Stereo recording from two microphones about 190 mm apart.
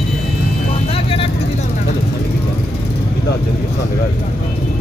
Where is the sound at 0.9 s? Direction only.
30° left (ahead or behind).